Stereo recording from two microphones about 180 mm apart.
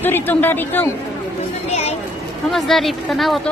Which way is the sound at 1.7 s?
35° left (ahead or behind).